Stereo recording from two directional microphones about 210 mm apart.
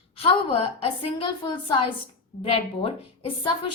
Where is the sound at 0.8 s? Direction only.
25° left (ahead or behind).